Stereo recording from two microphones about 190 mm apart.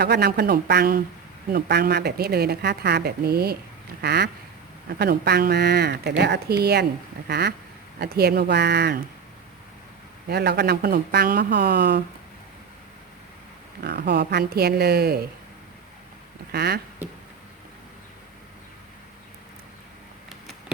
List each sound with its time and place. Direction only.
0.0 s speech: 60° right (ahead or behind)
10.2 s speech: 60° right (ahead or behind)
13.8 s speech: 60° right (ahead or behind)
16.5 s speech: 60° right (ahead or behind)